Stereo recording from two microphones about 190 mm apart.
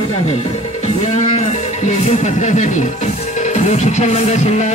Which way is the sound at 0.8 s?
35° left (ahead or behind).